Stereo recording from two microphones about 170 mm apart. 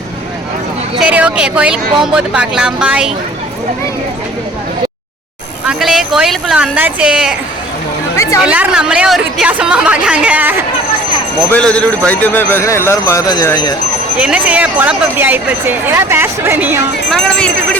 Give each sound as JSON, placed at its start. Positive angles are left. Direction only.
{"t": 0.9, "sound": "speech", "side_deg": -5}
{"t": 5.6, "sound": "speech", "side_deg": 0}
{"t": 8.1, "sound": "chatter", "side_deg": 20}
{"t": 8.4, "sound": "speech", "side_deg": -5}
{"t": 11.5, "sound": "a man's voice", "side_deg": 5}
{"t": 14.2, "sound": "speech", "side_deg": -5}
{"t": 17.1, "sound": "speech", "side_deg": 5}